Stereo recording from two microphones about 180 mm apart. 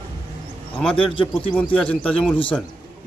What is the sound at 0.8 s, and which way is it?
A man's voice, 5° left (ahead or behind).